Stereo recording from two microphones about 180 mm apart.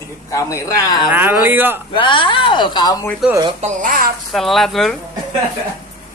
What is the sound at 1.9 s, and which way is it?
Speech, 25° left (ahead or behind).